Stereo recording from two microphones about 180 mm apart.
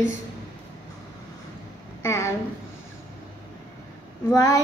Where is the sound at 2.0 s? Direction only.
15° left (ahead or behind).